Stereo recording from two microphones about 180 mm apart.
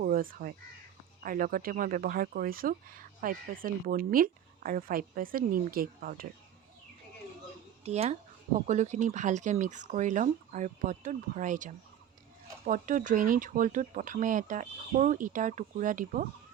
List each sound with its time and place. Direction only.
0.0 s speech: 50° right (ahead or behind)
7.9 s speech: 35° right (ahead or behind)